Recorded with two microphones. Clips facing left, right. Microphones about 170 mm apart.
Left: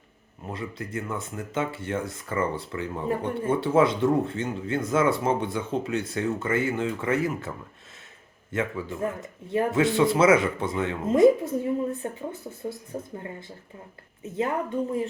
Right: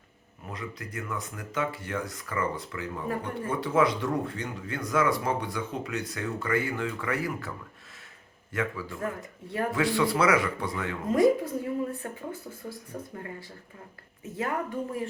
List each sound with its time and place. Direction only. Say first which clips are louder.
0.4 s speech: left 4 dB; 30° left (ahead or behind)
8.5 s speech: left 3 dB; 25° left (ahead or behind)